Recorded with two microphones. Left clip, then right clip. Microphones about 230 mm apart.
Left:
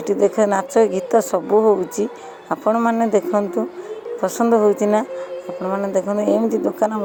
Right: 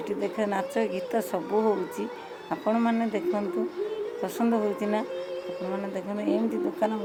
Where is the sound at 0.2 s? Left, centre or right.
Left.